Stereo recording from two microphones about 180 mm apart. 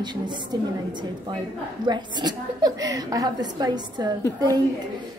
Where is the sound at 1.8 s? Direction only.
25° right (ahead or behind).